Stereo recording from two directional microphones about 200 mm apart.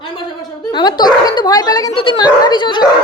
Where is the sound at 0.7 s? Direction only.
20° left (ahead or behind).